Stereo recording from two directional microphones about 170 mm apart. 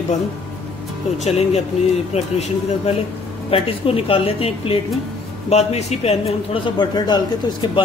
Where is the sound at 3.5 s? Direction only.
35° left (ahead or behind).